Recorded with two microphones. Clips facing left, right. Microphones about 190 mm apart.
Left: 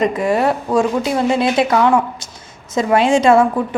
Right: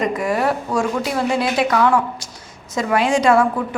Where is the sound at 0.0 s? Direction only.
25° left (ahead or behind).